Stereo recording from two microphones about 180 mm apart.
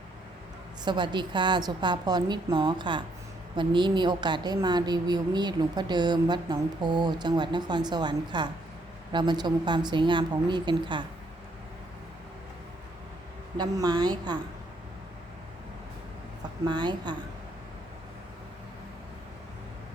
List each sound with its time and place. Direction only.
0.9 s a woman's voice: 25° right (ahead or behind)
13.6 s a woman's voice: 20° right (ahead or behind)
16.6 s a woman's voice: 25° right (ahead or behind)